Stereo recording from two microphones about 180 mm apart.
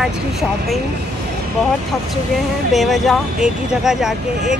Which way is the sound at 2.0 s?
Centre (ahead or behind).